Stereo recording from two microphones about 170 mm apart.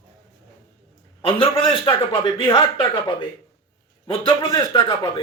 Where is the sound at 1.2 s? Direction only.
30° left (ahead or behind).